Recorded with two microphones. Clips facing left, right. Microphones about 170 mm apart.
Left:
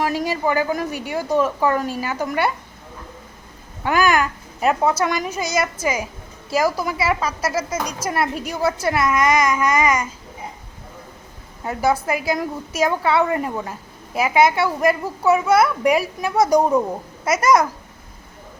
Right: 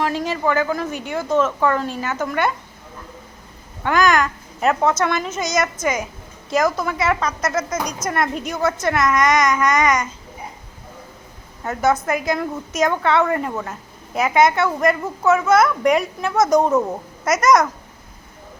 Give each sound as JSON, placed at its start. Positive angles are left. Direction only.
{"t": 0.0, "sound": "a woman's voice", "side_deg": 15}
{"t": 3.8, "sound": "a child's voice", "side_deg": 10}
{"t": 11.8, "sound": "a woman's voice", "side_deg": 30}
{"t": 12.0, "sound": "a woman's voice", "side_deg": 5}